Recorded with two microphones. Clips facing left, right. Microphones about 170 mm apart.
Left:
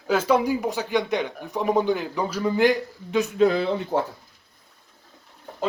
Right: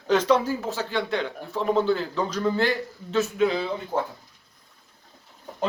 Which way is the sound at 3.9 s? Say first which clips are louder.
Left 1 dB; 90° left.